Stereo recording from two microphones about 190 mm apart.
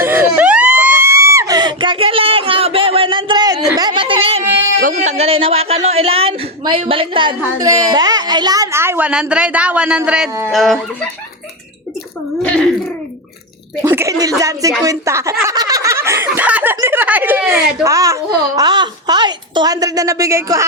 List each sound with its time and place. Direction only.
0.0 s a sound: 10° right (ahead or behind); by 4.4 s 30° right (ahead or behind)
4.8 s a man's voice: 40° right (ahead or behind); by 10.8 s centre (ahead or behind)
13.8 s speech: 15° right (ahead or behind)